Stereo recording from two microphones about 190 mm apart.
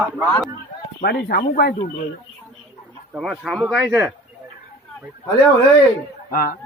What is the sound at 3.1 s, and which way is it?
Speech, 5° right (ahead or behind).